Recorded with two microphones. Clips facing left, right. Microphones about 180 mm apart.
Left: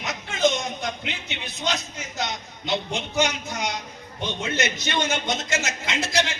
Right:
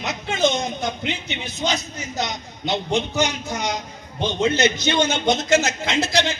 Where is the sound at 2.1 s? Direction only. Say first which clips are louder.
Right 3 dB; 70° right (ahead or behind).